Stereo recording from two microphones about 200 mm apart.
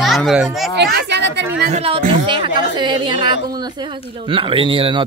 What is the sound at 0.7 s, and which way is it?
Speech, 55° right (ahead or behind).